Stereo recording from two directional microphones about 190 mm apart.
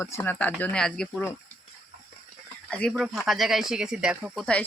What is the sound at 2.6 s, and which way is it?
Speech, 5° left (ahead or behind).